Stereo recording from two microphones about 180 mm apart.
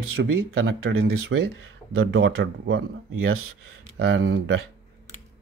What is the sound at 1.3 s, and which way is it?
Speech, 75° right (ahead or behind).